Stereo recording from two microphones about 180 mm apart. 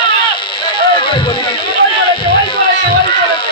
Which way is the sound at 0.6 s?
25° left (ahead or behind).